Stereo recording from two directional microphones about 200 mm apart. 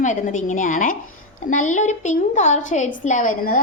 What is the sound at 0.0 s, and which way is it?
A woman's voice, 40° left (ahead or behind).